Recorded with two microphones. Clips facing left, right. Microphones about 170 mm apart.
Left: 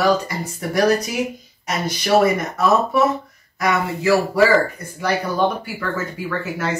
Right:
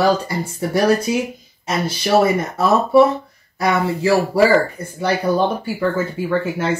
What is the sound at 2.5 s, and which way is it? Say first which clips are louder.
Speech: right 4 dB; 30° right (ahead or behind).